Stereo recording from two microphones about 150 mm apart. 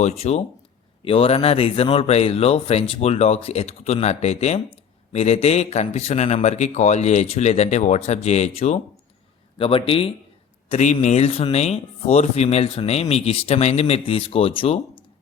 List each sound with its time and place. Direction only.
0.0 s speech: 45° left (ahead or behind)
9.6 s a man's voice: 35° left (ahead or behind)
10.7 s speech: 50° left (ahead or behind)